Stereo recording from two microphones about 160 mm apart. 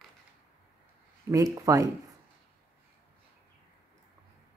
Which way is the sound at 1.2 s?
20° right (ahead or behind).